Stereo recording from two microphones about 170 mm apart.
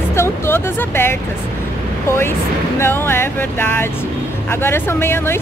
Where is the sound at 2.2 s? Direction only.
15° left (ahead or behind).